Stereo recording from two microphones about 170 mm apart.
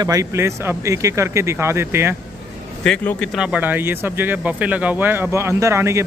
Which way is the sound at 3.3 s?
5° right (ahead or behind).